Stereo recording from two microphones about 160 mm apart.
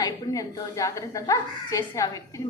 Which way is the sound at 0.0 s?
25° left (ahead or behind).